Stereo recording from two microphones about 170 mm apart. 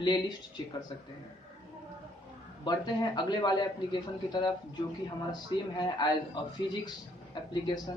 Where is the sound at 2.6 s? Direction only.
25° left (ahead or behind).